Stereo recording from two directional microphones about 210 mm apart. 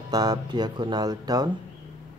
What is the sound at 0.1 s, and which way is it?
Speech, 20° right (ahead or behind).